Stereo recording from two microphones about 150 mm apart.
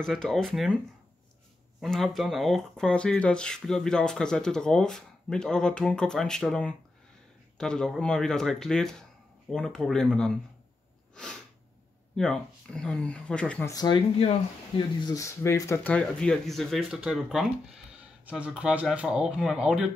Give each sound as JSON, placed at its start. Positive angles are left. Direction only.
{"t": 0.0, "sound": "speech", "side_deg": 5}
{"t": 1.8, "sound": "speech", "side_deg": 0}
{"t": 11.1, "sound": "sneeze", "side_deg": 5}
{"t": 12.2, "sound": "speech", "side_deg": 5}
{"t": 13.7, "sound": "speech", "side_deg": 25}
{"t": 15.0, "sound": "speech", "side_deg": 25}